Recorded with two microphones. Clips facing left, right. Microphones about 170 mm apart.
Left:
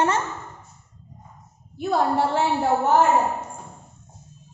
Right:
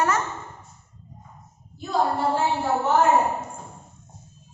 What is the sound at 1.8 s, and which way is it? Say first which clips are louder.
Speech: left 2 dB; 65° left (ahead or behind).